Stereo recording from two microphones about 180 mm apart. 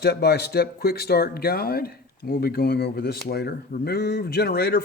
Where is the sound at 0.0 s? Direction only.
65° left (ahead or behind).